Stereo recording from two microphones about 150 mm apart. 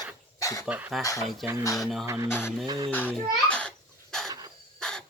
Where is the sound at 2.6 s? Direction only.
30° right (ahead or behind).